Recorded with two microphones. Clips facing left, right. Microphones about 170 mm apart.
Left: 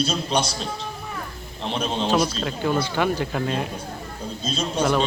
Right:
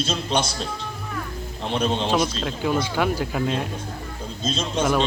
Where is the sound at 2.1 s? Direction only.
Centre (ahead or behind).